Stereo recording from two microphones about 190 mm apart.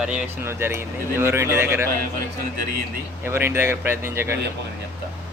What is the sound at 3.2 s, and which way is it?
Speech, 10° right (ahead or behind).